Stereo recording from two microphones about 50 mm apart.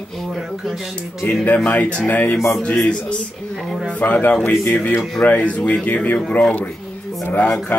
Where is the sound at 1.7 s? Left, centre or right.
Left.